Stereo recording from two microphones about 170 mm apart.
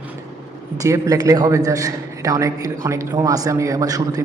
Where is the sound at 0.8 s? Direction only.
20° right (ahead or behind).